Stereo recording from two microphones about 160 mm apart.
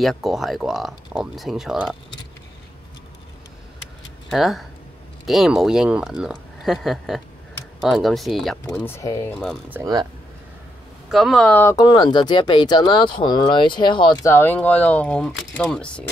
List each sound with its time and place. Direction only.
0.0 s speech: centre (ahead or behind)
4.3 s speech: centre (ahead or behind)
8.7 s speech: 15° left (ahead or behind)
9.7 s speech: 20° right (ahead or behind)
11.1 s speech: centre (ahead or behind)
11.5 s speech: 20° left (ahead or behind)
14.3 s speech: 10° left (ahead or behind)